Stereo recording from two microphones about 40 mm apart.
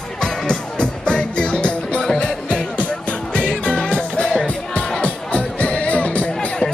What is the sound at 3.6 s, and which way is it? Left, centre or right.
Music, left.